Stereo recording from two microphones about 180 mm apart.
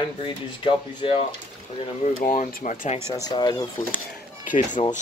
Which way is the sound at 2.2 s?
50° left (ahead or behind).